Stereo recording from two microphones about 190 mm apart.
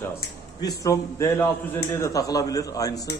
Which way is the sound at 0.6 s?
15° left (ahead or behind).